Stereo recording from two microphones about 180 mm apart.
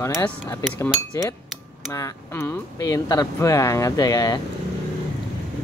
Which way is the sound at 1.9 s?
15° left (ahead or behind).